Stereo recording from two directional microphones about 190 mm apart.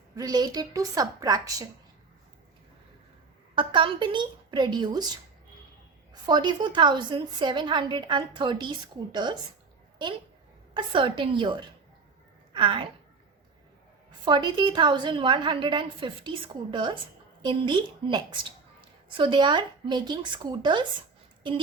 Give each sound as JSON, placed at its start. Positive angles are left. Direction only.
{"t": 0.2, "sound": "a woman's voice", "side_deg": -20}
{"t": 3.5, "sound": "a woman's voice", "side_deg": -25}
{"t": 6.2, "sound": "a woman's voice", "side_deg": -25}
{"t": 10.8, "sound": "a woman's voice", "side_deg": -25}
{"t": 14.3, "sound": "a woman's voice", "side_deg": -25}